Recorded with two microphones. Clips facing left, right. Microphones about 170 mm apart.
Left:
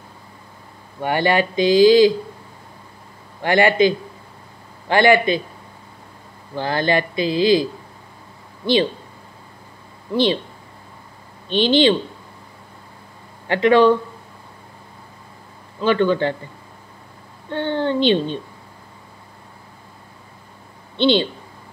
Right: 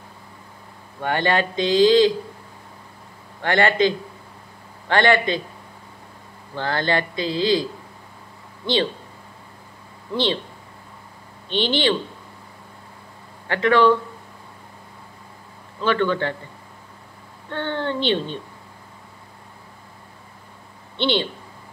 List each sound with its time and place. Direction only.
1.0 s speech: 10° left (ahead or behind)
3.4 s speech: 10° left (ahead or behind)
6.5 s speech: 15° left (ahead or behind)
11.5 s speech: 15° left (ahead or behind)
13.5 s speech: 15° left (ahead or behind)
15.8 s speech: 15° left (ahead or behind)
17.5 s speech: 15° left (ahead or behind)
21.0 s speech: 15° left (ahead or behind)